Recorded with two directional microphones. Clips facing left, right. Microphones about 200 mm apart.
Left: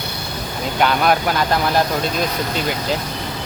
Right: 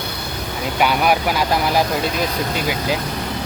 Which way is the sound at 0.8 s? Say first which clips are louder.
Left 1 dB; 10° right (ahead or behind).